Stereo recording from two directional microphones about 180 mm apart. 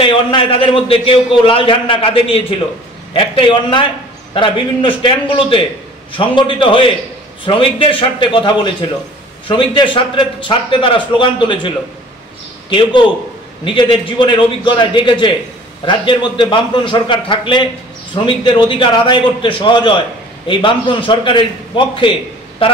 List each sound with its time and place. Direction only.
0.0 s a man's voice: 30° left (ahead or behind)